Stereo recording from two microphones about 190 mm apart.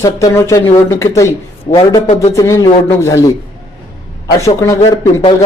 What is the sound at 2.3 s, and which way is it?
Speech, 15° left (ahead or behind).